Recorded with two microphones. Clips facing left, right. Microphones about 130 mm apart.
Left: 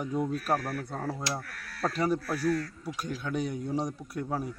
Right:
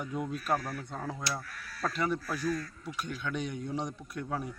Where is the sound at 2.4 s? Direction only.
75° left (ahead or behind).